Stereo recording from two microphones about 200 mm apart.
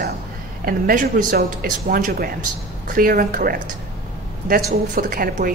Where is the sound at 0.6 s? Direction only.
45° right (ahead or behind).